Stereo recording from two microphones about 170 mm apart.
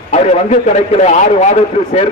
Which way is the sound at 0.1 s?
40° left (ahead or behind).